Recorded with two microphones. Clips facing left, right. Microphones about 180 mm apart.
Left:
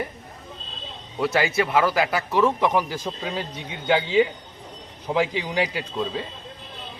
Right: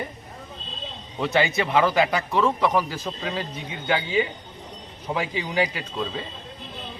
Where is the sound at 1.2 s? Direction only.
5° left (ahead or behind).